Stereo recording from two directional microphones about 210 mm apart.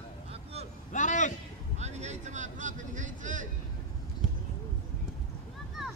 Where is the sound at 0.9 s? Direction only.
35° left (ahead or behind).